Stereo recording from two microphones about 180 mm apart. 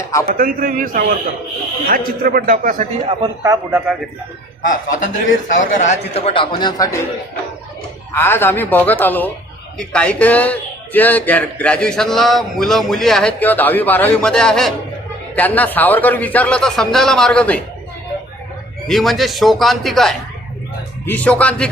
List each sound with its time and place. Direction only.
0.0 s speech: 15° left (ahead or behind)
0.3 s a man's voice: 50° right (ahead or behind)
3.4 s speech: 20° right (ahead or behind)
4.6 s speech: 45° left (ahead or behind)
6.1 s a man's voice: 30° left (ahead or behind)
8.1 s speech: 10° left (ahead or behind)
18.9 s speech: centre (ahead or behind)